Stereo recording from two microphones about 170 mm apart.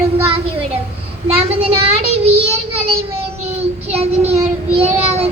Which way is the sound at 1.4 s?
35° right (ahead or behind).